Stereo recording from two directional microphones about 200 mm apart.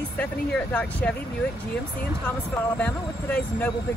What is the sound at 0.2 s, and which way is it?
Speech, 5° left (ahead or behind).